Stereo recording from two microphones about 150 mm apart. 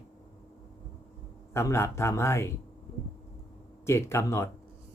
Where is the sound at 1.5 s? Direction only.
15° left (ahead or behind).